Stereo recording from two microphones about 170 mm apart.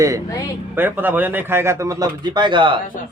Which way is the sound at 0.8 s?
10° right (ahead or behind).